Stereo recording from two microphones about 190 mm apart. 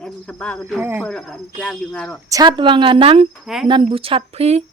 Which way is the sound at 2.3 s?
20° right (ahead or behind).